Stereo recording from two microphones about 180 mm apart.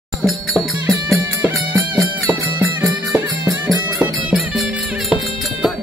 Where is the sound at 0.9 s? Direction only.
15° right (ahead or behind).